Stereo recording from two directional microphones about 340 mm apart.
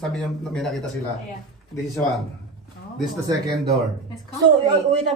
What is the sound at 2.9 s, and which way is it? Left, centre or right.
Speech, centre.